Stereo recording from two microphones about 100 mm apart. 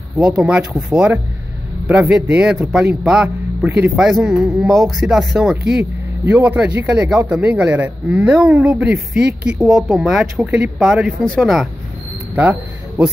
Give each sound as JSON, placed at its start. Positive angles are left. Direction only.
{"t": 0.2, "sound": "speech", "side_deg": -5}
{"t": 3.6, "sound": "speech", "side_deg": -20}
{"t": 3.9, "sound": "speech", "side_deg": -5}
{"t": 11.2, "sound": "speech", "side_deg": 5}
{"t": 12.4, "sound": "speech", "side_deg": -20}